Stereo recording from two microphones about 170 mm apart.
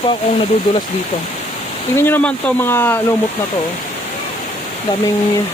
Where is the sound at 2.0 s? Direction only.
10° left (ahead or behind).